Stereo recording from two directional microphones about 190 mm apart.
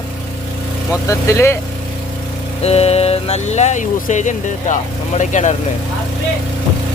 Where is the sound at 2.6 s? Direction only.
35° left (ahead or behind).